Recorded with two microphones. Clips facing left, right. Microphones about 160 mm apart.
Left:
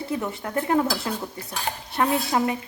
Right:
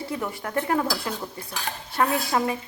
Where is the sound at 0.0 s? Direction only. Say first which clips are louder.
Left 2 dB; 20° left (ahead or behind).